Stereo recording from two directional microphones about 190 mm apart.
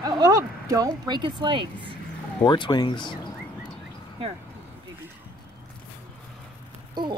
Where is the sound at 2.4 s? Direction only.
25° left (ahead or behind).